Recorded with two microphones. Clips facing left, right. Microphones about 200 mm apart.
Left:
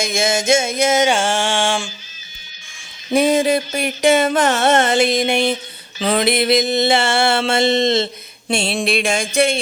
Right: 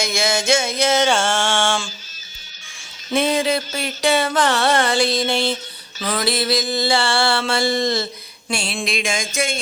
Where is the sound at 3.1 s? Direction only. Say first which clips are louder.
Left 4 dB; 15° left (ahead or behind).